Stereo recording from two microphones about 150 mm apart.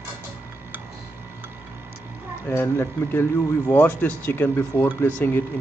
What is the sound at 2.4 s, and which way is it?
Speech, 20° left (ahead or behind).